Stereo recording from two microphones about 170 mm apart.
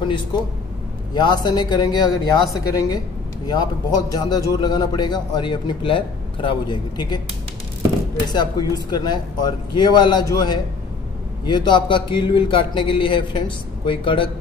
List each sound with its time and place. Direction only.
0.0 s a man's voice: 25° left (ahead or behind)
4.1 s a man's voice: 25° left (ahead or behind)
8.3 s a man's voice: 25° left (ahead or behind)